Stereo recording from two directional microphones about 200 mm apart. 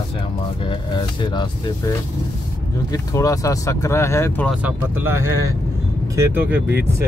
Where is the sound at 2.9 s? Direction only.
15° left (ahead or behind).